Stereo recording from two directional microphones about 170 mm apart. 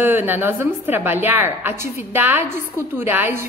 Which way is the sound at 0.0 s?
10° right (ahead or behind).